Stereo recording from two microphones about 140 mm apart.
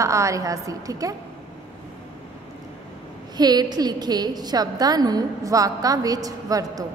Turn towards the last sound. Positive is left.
turn(degrees=-25)  # may be behind; listen again after turning